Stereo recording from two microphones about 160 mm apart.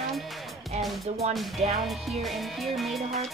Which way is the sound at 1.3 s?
Centre (ahead or behind).